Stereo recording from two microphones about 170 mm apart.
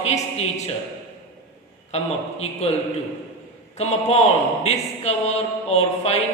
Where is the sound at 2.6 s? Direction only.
40° left (ahead or behind).